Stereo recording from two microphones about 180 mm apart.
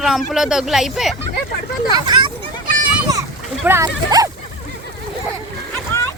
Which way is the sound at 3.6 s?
15° right (ahead or behind).